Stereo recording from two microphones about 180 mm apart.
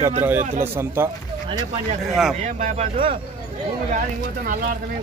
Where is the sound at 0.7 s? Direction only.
15° right (ahead or behind).